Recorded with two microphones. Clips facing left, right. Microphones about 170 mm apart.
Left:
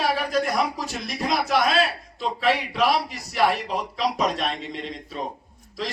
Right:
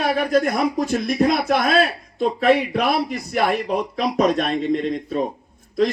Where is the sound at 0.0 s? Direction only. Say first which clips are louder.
Right 5 dB; 50° right (ahead or behind).